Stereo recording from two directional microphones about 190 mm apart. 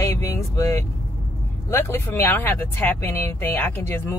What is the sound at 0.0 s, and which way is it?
Vehicle, 15° left (ahead or behind).